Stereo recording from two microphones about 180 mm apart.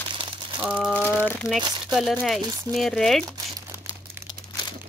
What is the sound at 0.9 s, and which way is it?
Crumpling, 10° left (ahead or behind).